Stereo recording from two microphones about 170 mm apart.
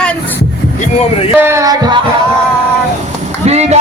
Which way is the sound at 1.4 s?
15° right (ahead or behind).